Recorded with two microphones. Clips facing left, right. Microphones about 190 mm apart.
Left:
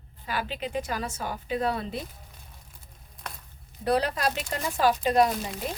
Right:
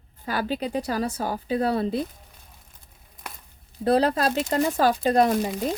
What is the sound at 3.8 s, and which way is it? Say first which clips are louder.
Speech: right 5 dB; 35° right (ahead or behind).